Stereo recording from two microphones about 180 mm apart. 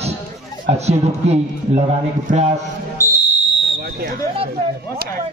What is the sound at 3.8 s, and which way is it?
Speech, 60° right (ahead or behind).